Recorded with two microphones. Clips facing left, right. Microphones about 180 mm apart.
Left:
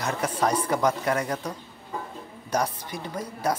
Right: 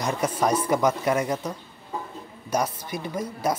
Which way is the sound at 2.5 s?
10° right (ahead or behind).